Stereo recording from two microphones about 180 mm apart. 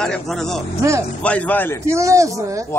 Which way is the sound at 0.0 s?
5° left (ahead or behind).